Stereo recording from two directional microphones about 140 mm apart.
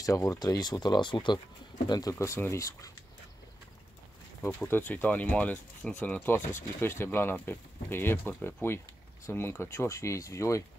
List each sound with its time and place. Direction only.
0.0 s speech: 25° left (ahead or behind)
4.4 s speech: 15° left (ahead or behind)